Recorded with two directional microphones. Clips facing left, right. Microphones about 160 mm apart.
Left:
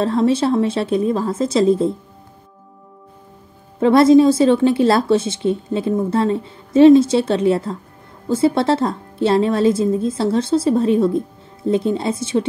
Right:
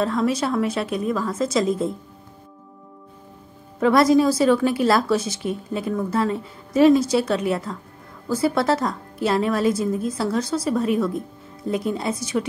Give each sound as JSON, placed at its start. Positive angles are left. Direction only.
{"t": 0.0, "sound": "a woman's voice", "side_deg": 30}
{"t": 3.8, "sound": "a woman's voice", "side_deg": 25}